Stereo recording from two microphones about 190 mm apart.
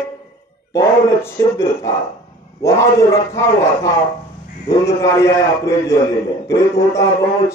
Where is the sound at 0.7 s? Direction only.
15° left (ahead or behind).